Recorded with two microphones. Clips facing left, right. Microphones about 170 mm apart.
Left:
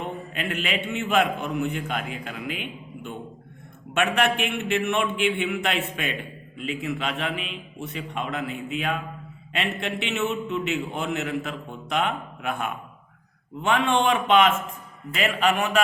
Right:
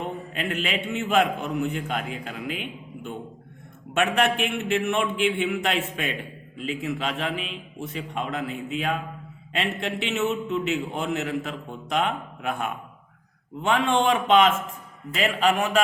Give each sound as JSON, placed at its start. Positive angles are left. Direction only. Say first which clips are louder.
{"t": 0.0, "sound": "a man's voice", "louder": "right 1 dB", "side_deg": -35}